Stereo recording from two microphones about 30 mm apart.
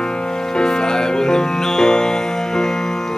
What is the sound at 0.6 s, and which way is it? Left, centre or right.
Music, left.